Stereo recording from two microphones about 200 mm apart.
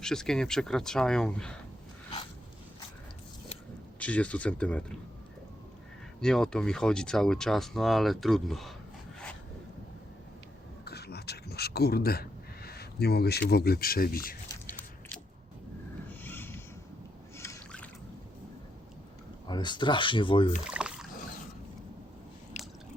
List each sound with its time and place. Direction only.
0.0 s speech: 5° left (ahead or behind)
4.0 s speech: 5° left (ahead or behind)
6.1 s speech: 5° left (ahead or behind)
10.8 s a sound: 55° left (ahead or behind)
13.5 s speech: 50° left (ahead or behind)
14.7 s biting: 10° left (ahead or behind)
16.0 s a sound: 10° left (ahead or behind)
19.5 s speech: 20° left (ahead or behind)
20.7 s rowboat: 5° right (ahead or behind)
22.5 s squish: 35° left (ahead or behind)